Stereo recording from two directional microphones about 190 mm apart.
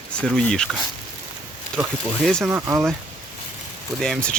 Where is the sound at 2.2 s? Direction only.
5° left (ahead or behind).